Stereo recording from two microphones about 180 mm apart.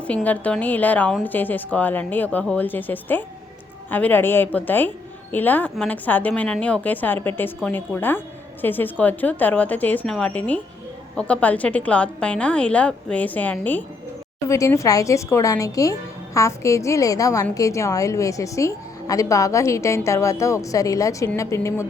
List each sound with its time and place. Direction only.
0.1 s a woman's voice: 10° left (ahead or behind)